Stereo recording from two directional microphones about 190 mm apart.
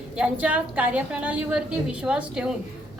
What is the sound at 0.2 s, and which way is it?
A woman's voice, 5° right (ahead or behind).